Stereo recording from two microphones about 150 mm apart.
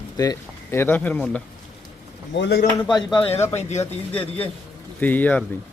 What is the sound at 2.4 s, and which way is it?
Speech, 90° left.